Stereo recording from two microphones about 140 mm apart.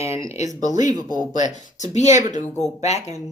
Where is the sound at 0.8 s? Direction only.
25° right (ahead or behind).